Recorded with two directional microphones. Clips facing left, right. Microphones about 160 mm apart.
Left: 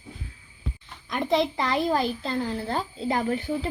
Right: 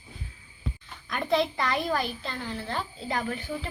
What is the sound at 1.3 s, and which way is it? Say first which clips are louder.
A child's voice: left 2 dB; 25° left (ahead or behind).